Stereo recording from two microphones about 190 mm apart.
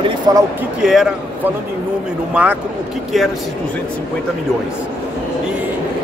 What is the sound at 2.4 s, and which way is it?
Speech, 5° right (ahead or behind).